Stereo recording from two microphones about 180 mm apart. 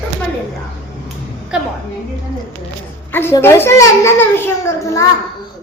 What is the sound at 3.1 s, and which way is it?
A child's voice, 15° left (ahead or behind).